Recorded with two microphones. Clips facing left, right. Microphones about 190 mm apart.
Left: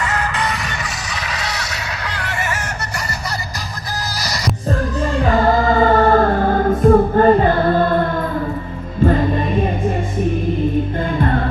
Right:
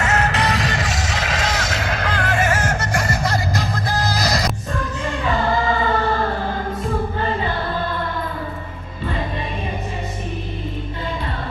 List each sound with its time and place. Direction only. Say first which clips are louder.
1.3 s a sound: right 3 dB; 90° right
2.0 s music: right 5 dB; 50° right (ahead or behind)
5.2 s music: left 5 dB; 45° left (ahead or behind)